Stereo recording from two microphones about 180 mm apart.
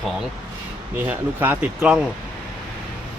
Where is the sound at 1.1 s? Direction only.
10° right (ahead or behind).